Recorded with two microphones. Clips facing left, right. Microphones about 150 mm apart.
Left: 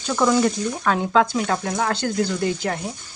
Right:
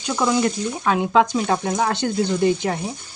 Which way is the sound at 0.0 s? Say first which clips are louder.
Left 1 dB; 10° right (ahead or behind).